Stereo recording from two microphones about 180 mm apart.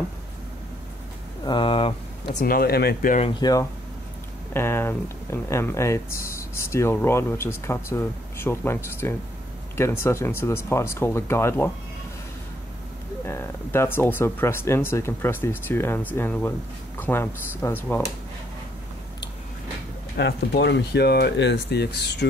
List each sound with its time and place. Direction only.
1.4 s speech: 25° left (ahead or behind)
2.3 s speech: 55° left (ahead or behind)
3.2 s speech: 25° left (ahead or behind)
13.2 s speech: 10° left (ahead or behind)
20.2 s speech: 70° left (ahead or behind)